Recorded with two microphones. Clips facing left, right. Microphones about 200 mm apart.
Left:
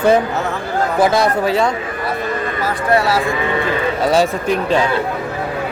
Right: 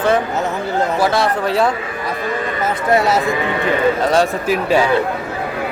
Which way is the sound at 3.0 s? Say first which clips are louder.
Right 1 dB; 20° right (ahead or behind).